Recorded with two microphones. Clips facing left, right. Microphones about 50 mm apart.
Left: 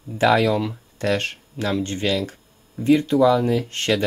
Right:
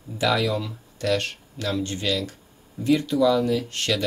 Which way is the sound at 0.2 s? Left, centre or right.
Left.